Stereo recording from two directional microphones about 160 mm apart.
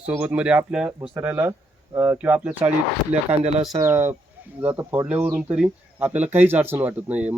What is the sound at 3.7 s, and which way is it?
Speech, 15° right (ahead or behind).